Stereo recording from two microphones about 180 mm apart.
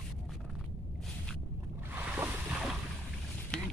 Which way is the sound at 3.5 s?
5° left (ahead or behind).